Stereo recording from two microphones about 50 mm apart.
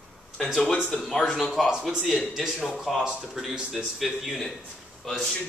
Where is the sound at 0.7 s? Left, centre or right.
Centre.